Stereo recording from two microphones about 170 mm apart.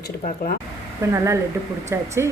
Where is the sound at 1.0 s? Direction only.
15° right (ahead or behind).